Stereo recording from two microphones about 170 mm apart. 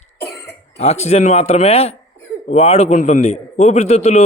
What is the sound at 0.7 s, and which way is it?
A man's voice, 40° left (ahead or behind).